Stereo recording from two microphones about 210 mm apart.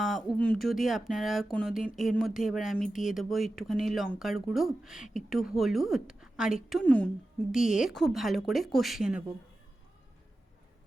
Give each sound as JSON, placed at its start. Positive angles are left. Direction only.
{"t": 0.0, "sound": "speech", "side_deg": 0}